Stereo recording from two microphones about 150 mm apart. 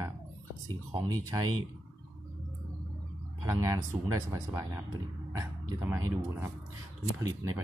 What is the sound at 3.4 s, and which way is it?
Speech, 20° right (ahead or behind).